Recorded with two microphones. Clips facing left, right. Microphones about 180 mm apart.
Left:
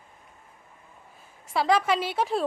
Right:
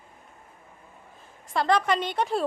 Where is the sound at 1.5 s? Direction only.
5° left (ahead or behind).